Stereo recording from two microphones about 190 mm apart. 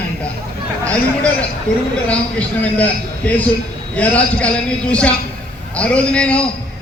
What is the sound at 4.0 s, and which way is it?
Speech, 5° left (ahead or behind).